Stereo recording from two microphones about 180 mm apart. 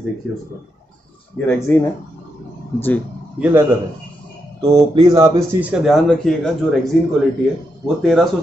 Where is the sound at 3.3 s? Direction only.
10° right (ahead or behind).